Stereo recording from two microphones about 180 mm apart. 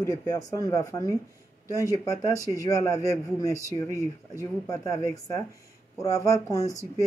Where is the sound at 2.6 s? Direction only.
20° left (ahead or behind).